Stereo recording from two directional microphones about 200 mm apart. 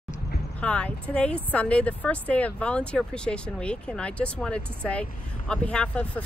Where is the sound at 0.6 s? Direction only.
5° left (ahead or behind).